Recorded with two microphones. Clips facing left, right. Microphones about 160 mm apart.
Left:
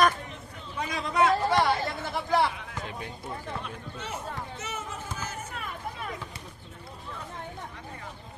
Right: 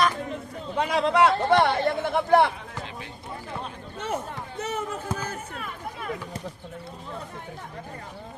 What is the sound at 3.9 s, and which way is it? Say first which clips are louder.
Run: right 7 dB; 55° right (ahead or behind).